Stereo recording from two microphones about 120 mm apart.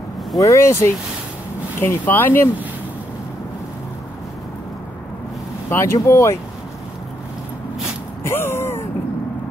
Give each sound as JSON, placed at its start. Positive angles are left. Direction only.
{"t": 0.4, "sound": "speech", "side_deg": 25}
{"t": 5.7, "sound": "speech", "side_deg": 25}
{"t": 8.2, "sound": "a sound", "side_deg": 20}